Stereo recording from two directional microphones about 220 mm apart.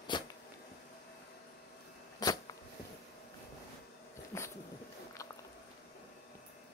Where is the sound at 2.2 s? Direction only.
15° left (ahead or behind).